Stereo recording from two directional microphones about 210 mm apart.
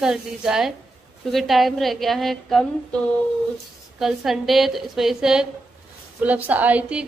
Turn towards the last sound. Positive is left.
turn(degrees=-5)  # may be behind; listen again after turning